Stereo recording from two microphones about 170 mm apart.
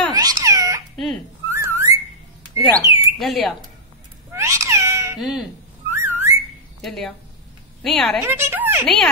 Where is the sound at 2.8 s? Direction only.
20° right (ahead or behind).